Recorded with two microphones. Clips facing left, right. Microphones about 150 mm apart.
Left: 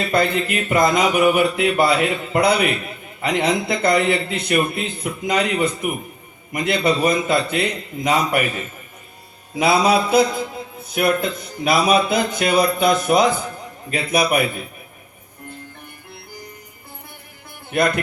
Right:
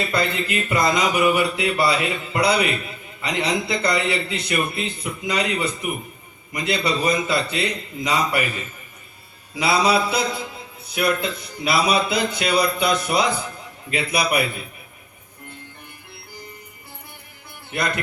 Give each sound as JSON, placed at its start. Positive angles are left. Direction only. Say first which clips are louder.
{"t": 0.1, "sound": "a man's voice", "louder": "left 4 dB", "side_deg": 50}
{"t": 17.7, "sound": "speech", "louder": "left 6 dB", "side_deg": 50}